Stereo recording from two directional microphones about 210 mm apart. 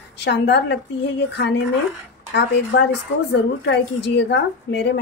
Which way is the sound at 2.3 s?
55° left (ahead or behind).